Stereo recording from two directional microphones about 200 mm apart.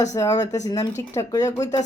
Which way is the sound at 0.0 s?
15° left (ahead or behind).